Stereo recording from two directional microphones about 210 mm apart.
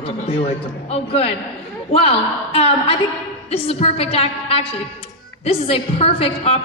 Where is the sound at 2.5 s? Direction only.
30° left (ahead or behind).